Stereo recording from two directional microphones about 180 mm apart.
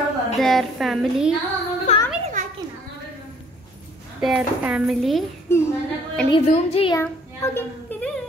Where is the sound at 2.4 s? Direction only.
45° right (ahead or behind).